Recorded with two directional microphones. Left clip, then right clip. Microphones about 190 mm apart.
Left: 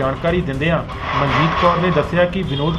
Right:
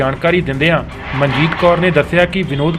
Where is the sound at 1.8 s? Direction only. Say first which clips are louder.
Right 4 dB; 25° right (ahead or behind).